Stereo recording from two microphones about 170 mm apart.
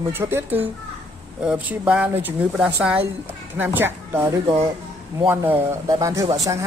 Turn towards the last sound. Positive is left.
turn(degrees=-20)  # may be behind; listen again after turning